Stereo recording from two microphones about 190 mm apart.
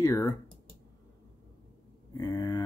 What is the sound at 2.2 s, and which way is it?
Speech, 20° left (ahead or behind).